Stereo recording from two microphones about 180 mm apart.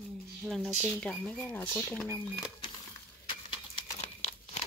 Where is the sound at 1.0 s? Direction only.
5° left (ahead or behind).